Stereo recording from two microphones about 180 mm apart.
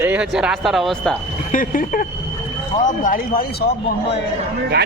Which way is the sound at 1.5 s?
50° left (ahead or behind).